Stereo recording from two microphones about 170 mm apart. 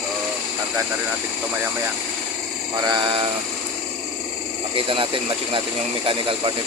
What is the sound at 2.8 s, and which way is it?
Speech, 25° right (ahead or behind).